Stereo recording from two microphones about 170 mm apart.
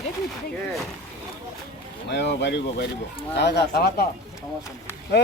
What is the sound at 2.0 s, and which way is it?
Speech, 90° left.